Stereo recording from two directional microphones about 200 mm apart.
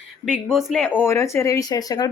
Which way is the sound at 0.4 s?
Centre (ahead or behind).